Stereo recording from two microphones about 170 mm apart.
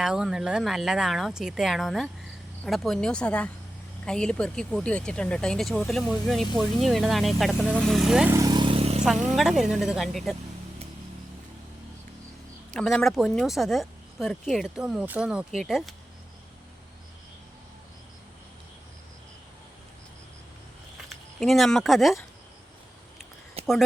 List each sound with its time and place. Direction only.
0.0 s speech: 5° right (ahead or behind)
8.3 s vehicle: 20° right (ahead or behind); by 9.0 s 35° right (ahead or behind)
9.0 s speech: centre (ahead or behind)
12.7 s speech: 5° left (ahead or behind)
21.3 s speech: centre (ahead or behind)
23.6 s a sound: 35° right (ahead or behind)